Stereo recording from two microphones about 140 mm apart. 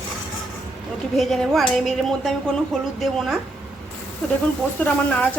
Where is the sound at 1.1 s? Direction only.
Centre (ahead or behind).